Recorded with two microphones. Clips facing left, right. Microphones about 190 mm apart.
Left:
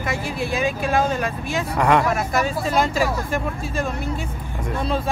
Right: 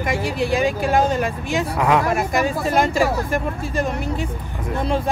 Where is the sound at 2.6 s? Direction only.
50° right (ahead or behind).